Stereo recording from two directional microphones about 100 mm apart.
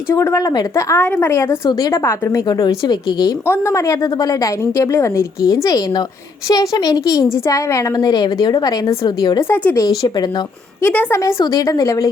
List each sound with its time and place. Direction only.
0.1 s a woman's voice: 30° left (ahead or behind)
1.3 s a woman's voice: 30° left (ahead or behind)
2.4 s speech: 45° left (ahead or behind)
3.4 s a woman's voice: 25° left (ahead or behind)
9.0 s speech: 45° left (ahead or behind)
9.4 s a woman's voice: 25° left (ahead or behind)
10.0 s speech: 45° left (ahead or behind)
10.8 s a woman's voice: 20° left (ahead or behind)
11.3 s a woman's voice: 40° left (ahead or behind)